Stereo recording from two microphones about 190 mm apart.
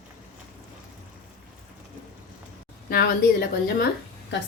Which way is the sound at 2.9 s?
55° left (ahead or behind).